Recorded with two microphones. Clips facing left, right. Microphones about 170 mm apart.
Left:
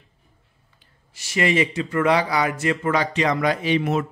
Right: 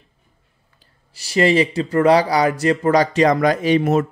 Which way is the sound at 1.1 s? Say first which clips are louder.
Right 5 dB; 35° right (ahead or behind).